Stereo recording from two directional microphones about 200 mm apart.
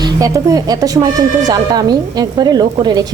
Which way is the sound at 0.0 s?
20° right (ahead or behind).